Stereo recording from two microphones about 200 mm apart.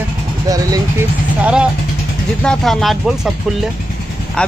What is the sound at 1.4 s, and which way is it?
Speech, 5° right (ahead or behind).